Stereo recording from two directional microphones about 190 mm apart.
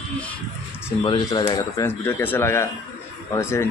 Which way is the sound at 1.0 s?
20° left (ahead or behind).